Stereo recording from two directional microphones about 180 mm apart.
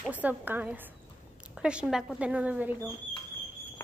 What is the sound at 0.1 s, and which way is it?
A woman's voice, 10° right (ahead or behind).